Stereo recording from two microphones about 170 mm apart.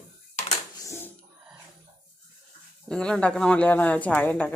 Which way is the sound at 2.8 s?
5° left (ahead or behind).